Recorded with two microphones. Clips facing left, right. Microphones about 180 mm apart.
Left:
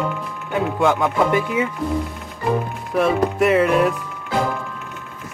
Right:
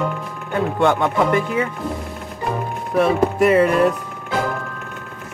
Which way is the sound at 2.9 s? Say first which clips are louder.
Right 1 dB; centre (ahead or behind).